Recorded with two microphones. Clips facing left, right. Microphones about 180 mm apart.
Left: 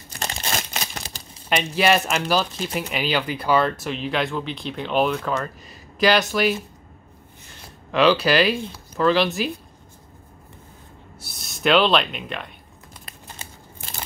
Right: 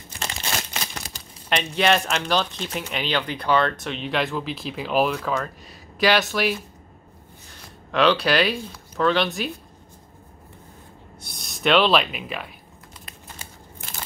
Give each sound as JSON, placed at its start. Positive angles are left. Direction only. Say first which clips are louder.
{"t": 0.2, "sound": "a sound", "louder": "left 2 dB", "side_deg": 40}
{"t": 1.5, "sound": "speech", "louder": "left 1 dB", "side_deg": 5}
{"t": 7.9, "sound": "speech", "louder": "left 2 dB", "side_deg": 0}
{"t": 11.1, "sound": "speech", "louder": "right 1 dB", "side_deg": 5}